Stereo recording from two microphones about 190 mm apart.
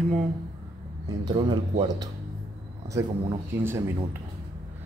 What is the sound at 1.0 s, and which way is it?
Speech, 25° right (ahead or behind).